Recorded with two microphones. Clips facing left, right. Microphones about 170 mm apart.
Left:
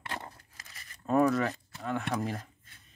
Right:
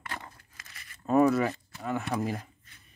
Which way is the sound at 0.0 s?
25° left (ahead or behind).